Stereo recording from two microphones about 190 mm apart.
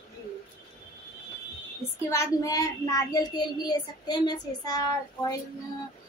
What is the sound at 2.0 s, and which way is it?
Speech, 15° left (ahead or behind).